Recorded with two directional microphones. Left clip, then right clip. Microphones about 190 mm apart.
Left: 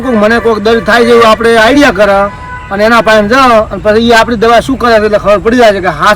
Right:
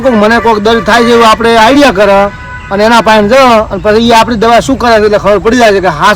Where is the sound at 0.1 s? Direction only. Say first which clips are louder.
Even; 40° right (ahead or behind).